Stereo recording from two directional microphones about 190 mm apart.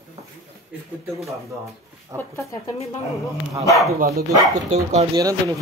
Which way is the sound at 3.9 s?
50° right (ahead or behind).